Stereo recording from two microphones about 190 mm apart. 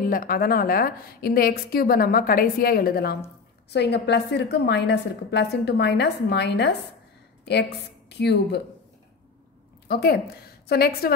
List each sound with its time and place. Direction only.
0.0 s a woman's voice: 45° left (ahead or behind)
8.1 s a woman's voice: 60° left (ahead or behind)
9.8 s a woman's voice: 55° left (ahead or behind)